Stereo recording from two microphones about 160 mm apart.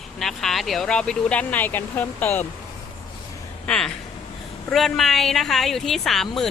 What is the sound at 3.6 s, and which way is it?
A woman's voice, 5° left (ahead or behind).